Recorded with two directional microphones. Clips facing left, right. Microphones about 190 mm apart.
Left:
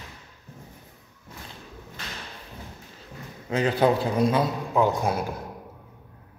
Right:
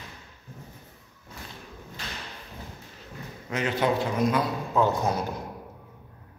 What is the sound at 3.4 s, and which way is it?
A man's voice, 35° left (ahead or behind).